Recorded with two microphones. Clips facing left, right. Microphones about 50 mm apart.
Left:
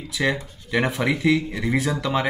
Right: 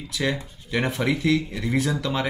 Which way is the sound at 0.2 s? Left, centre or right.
Centre.